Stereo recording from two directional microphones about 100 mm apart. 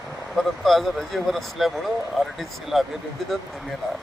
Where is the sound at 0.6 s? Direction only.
Centre (ahead or behind).